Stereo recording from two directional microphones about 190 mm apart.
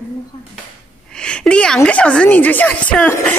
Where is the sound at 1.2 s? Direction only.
5° left (ahead or behind).